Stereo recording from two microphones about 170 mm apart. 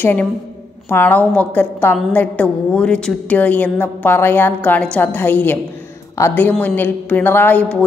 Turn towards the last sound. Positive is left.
turn(degrees=5)  # may be behind; listen again after turning